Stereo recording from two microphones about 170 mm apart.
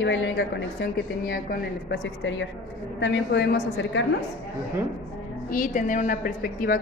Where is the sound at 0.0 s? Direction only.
90° left.